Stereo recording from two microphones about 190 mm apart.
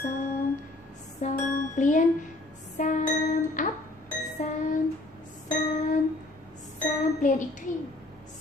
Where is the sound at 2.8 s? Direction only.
40° left (ahead or behind).